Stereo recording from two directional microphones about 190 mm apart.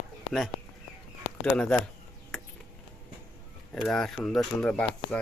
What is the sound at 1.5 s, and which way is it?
Speech, 5° left (ahead or behind).